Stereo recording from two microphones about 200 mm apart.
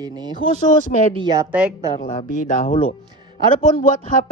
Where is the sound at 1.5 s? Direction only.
5° right (ahead or behind).